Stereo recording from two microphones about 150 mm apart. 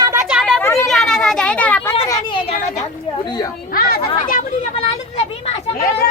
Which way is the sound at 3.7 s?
75° left (ahead or behind).